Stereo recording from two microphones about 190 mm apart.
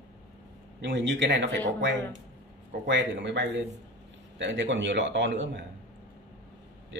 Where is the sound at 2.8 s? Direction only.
70° right (ahead or behind).